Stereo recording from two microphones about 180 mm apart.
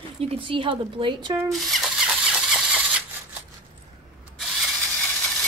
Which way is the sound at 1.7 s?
5° right (ahead or behind).